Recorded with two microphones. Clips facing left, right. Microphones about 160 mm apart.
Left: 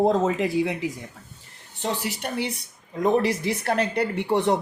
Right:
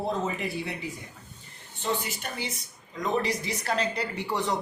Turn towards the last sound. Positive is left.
turn(degrees=60)  # may be behind; listen again after turning